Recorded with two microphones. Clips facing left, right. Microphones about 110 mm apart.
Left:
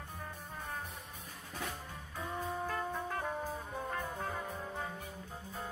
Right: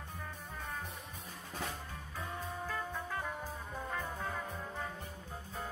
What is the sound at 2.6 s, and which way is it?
Music, 40° left (ahead or behind).